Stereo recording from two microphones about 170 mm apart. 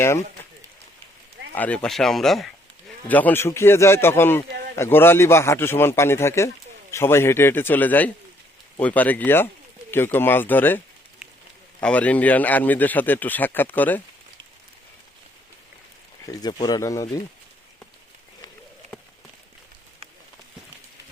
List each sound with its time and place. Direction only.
1.5 s a man's voice: 10° left (ahead or behind)
11.2 s a sound: centre (ahead or behind)
11.8 s a man's voice: 5° left (ahead or behind)
16.2 s speech: 20° left (ahead or behind)